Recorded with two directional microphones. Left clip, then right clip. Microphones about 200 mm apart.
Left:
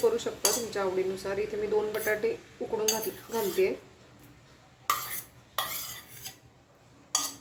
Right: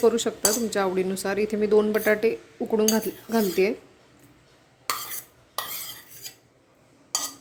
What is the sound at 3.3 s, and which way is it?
Speech, 60° right (ahead or behind).